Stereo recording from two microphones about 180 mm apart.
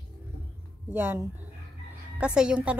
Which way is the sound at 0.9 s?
10° right (ahead or behind).